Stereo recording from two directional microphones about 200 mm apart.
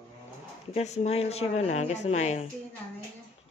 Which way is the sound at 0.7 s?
35° left (ahead or behind).